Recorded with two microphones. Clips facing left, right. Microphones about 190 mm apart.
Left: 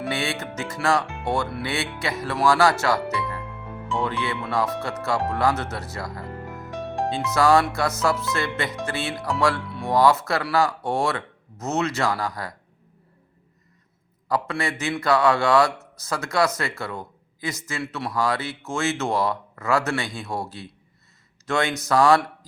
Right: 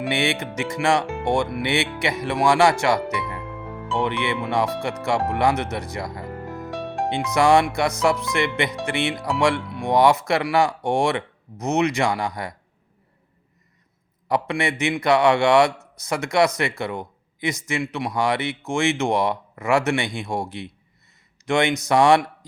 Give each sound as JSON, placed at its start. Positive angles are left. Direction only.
{"t": 0.0, "sound": "a man's voice", "side_deg": -20}
{"t": 9.1, "sound": "speech", "side_deg": 0}
{"t": 9.4, "sound": "speech", "side_deg": -20}
{"t": 14.3, "sound": "a man's voice", "side_deg": -20}
{"t": 21.4, "sound": "a man's voice", "side_deg": -15}